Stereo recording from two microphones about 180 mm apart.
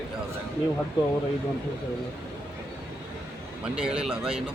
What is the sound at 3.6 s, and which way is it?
Speech, 5° right (ahead or behind).